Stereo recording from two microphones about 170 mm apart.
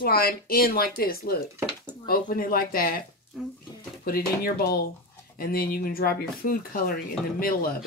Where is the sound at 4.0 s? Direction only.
60° left (ahead or behind).